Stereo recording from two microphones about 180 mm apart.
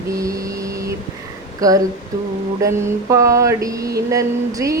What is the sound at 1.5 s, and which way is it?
Speech, 20° right (ahead or behind).